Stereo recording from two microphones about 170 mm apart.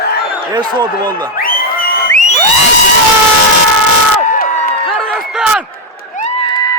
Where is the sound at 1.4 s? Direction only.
60° left (ahead or behind).